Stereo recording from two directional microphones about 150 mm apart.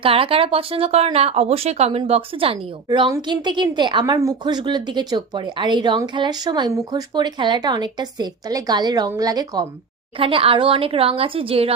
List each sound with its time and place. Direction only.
0.0 s a woman's voice: 40° right (ahead or behind)
10.2 s speech: 35° right (ahead or behind)